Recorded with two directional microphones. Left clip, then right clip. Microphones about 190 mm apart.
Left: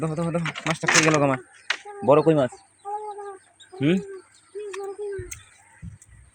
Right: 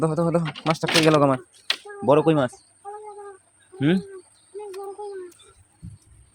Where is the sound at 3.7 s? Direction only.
20° right (ahead or behind).